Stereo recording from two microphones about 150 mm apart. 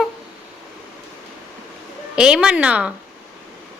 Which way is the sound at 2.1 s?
5° right (ahead or behind).